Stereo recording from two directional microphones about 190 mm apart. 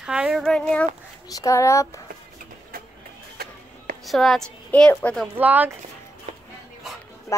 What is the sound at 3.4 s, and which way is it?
Music, 55° right (ahead or behind).